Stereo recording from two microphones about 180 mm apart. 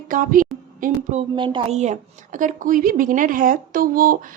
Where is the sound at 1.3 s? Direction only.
25° right (ahead or behind).